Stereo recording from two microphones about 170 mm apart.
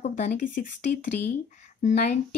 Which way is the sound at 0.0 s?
45° left (ahead or behind).